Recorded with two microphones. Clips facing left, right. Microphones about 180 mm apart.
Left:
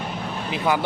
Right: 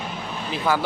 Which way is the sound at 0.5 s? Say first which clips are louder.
Even; 20° left (ahead or behind).